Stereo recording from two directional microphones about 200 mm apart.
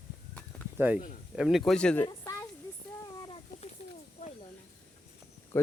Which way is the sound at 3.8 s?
35° left (ahead or behind).